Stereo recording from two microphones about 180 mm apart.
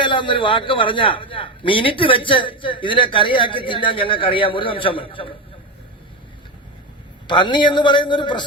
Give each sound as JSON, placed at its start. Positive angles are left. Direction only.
{"t": 0.0, "sound": "a man's voice", "side_deg": 25}
{"t": 7.3, "sound": "a man's voice", "side_deg": 25}